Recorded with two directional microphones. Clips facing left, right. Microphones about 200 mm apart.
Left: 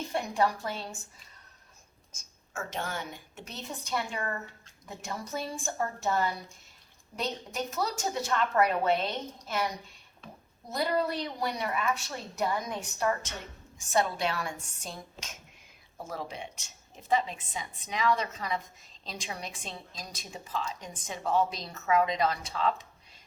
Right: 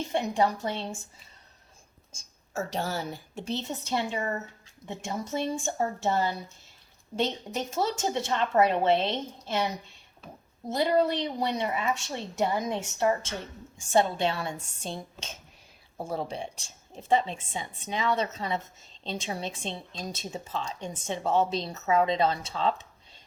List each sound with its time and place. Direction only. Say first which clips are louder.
0.1 s speech: right 2 dB; 25° right (ahead or behind)
2.5 s speech: right 5 dB; 35° right (ahead or behind)